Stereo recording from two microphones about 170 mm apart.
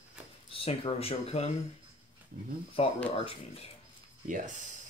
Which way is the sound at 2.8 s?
35° left (ahead or behind).